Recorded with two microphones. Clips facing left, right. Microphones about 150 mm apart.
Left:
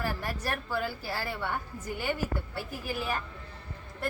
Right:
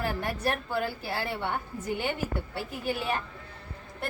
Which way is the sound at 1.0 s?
25° right (ahead or behind).